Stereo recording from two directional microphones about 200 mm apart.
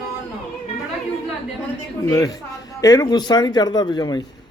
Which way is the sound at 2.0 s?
20° left (ahead or behind).